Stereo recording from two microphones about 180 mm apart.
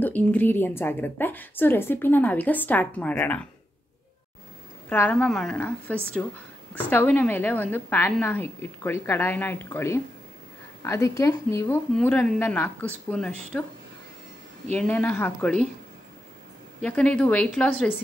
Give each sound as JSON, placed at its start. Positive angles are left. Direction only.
{"t": 0.0, "sound": "a woman's voice", "side_deg": 10}
{"t": 4.8, "sound": "a woman's voice", "side_deg": 10}
{"t": 14.8, "sound": "a woman's voice", "side_deg": 10}
{"t": 16.8, "sound": "a woman's voice", "side_deg": 5}